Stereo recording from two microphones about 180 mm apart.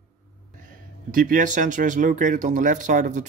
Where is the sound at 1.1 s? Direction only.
50° right (ahead or behind).